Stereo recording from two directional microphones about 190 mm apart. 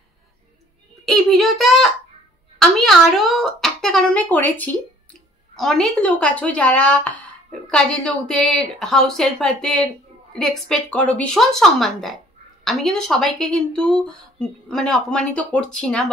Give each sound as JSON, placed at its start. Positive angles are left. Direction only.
{"t": 1.0, "sound": "a child's voice", "side_deg": 0}